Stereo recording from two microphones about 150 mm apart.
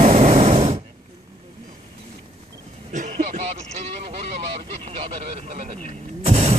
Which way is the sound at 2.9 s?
55° right (ahead or behind).